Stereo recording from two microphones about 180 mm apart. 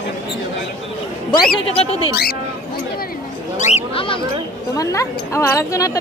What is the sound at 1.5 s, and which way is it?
Speech, 35° left (ahead or behind).